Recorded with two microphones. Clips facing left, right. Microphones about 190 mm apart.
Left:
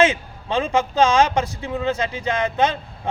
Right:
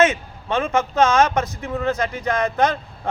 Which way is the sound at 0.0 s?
30° left (ahead or behind).